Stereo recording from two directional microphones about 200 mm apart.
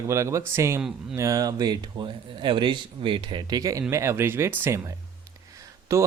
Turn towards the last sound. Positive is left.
turn(degrees=-15)  # may be behind; listen again after turning